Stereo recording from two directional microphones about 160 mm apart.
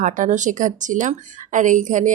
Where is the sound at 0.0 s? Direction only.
50° right (ahead or behind).